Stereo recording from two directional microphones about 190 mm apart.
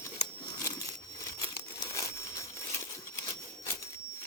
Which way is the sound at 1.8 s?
15° left (ahead or behind).